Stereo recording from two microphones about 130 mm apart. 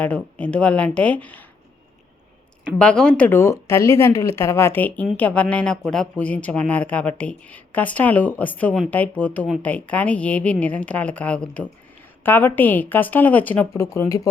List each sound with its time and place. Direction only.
0.0 s speech: 10° left (ahead or behind)
2.7 s speech: 5° left (ahead or behind)